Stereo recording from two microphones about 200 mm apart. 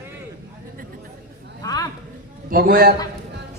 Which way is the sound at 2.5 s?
50° right (ahead or behind).